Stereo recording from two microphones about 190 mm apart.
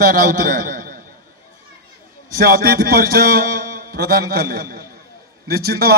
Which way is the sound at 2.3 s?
50° right (ahead or behind).